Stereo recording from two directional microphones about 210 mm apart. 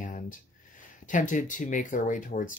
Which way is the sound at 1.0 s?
40° left (ahead or behind).